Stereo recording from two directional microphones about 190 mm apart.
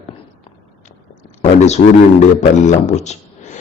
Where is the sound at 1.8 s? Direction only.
55° left (ahead or behind).